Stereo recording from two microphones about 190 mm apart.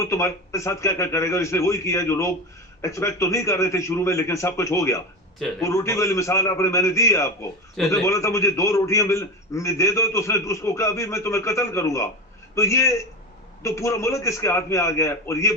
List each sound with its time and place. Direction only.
0.0 s a man's voice: 15° left (ahead or behind)